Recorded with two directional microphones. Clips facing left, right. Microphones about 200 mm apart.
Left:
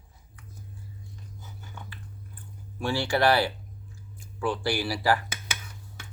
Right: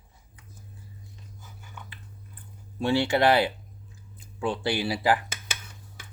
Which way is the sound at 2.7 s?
20° right (ahead or behind).